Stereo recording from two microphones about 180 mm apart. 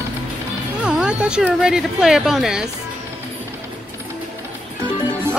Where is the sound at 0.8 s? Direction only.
5° right (ahead or behind).